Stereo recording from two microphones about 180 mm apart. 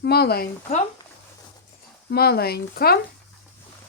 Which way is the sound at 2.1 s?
60° left (ahead or behind).